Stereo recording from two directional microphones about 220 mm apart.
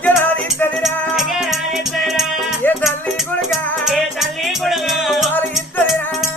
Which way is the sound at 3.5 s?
Centre (ahead or behind).